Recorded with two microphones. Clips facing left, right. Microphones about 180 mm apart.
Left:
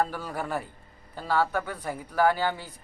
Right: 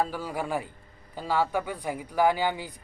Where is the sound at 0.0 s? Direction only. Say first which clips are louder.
Even; 10° right (ahead or behind).